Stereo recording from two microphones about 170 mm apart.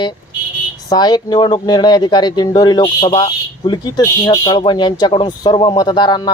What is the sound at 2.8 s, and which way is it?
Speech, 35° left (ahead or behind).